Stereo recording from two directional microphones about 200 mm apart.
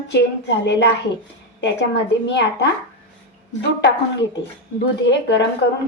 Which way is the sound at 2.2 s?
60° left (ahead or behind).